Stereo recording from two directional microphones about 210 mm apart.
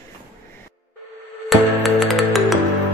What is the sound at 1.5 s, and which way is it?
Music, centre (ahead or behind).